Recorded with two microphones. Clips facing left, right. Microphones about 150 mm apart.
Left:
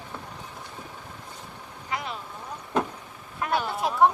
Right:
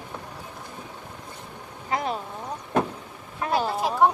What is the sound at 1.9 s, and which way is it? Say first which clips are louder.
Vehicle: right 6 dB; 40° right (ahead or behind).